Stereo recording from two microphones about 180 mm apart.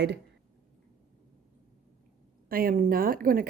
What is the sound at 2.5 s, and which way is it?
Speech, 55° right (ahead or behind).